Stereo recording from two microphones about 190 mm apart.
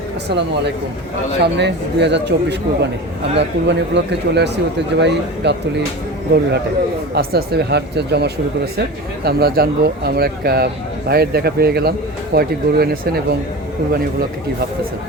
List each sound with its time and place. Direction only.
0.3 s speech: 65° right (ahead or behind)
7.1 s speech: 55° right (ahead or behind)